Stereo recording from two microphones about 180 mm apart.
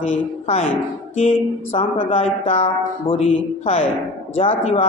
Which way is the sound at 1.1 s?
35° left (ahead or behind).